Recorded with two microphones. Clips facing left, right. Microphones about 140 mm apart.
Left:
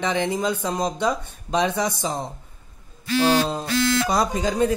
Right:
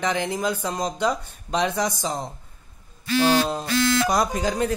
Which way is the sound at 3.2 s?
5° right (ahead or behind).